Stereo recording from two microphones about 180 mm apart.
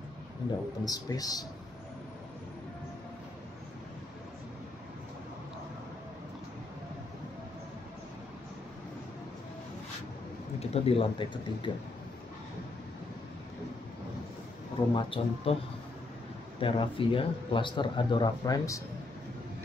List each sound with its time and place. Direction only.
0.5 s a man's voice: 20° left (ahead or behind)
10.6 s speech: 35° left (ahead or behind)
15.0 s a man's voice: 30° left (ahead or behind)
16.5 s a man's voice: 30° left (ahead or behind)